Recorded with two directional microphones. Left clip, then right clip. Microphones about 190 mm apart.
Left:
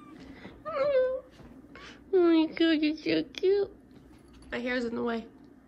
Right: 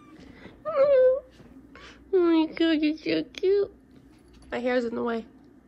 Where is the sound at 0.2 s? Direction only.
Centre (ahead or behind).